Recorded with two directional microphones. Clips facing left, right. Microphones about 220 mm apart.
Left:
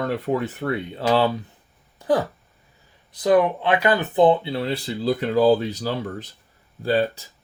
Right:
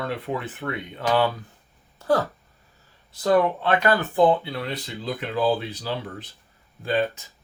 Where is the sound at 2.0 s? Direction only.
15° left (ahead or behind).